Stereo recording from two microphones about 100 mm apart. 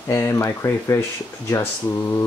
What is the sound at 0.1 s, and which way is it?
Speech, 25° left (ahead or behind).